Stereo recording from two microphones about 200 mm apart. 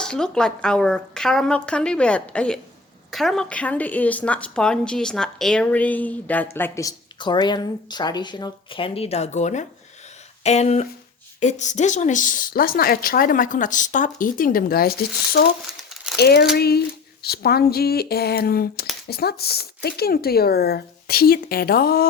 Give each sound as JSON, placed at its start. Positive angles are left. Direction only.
{"t": 0.0, "sound": "a woman's voice", "side_deg": 5}